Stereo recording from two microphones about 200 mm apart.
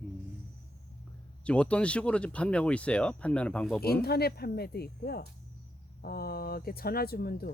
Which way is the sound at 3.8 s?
50° left (ahead or behind).